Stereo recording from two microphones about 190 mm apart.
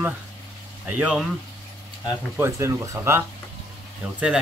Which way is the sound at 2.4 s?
15° right (ahead or behind).